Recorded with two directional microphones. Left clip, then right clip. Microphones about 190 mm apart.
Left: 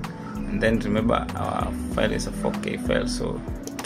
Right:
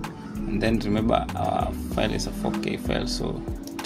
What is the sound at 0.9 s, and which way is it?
Speech, 35° right (ahead or behind).